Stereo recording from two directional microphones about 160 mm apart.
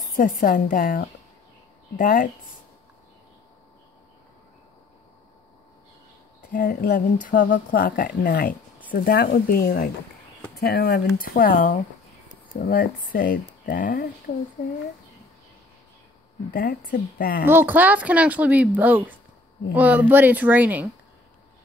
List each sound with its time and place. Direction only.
0.1 s speech: 55° left (ahead or behind)
6.5 s speech: 60° left (ahead or behind)
11.1 s speech: 65° left (ahead or behind)
16.5 s speech: 60° left (ahead or behind)
17.5 s speech: 10° right (ahead or behind)